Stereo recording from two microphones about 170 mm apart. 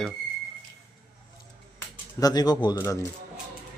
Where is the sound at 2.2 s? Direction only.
20° left (ahead or behind).